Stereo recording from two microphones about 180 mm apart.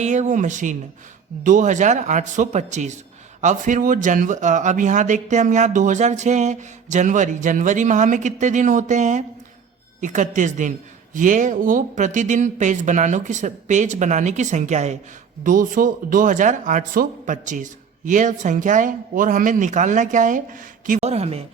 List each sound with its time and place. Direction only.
0.0 s speech: 40° right (ahead or behind)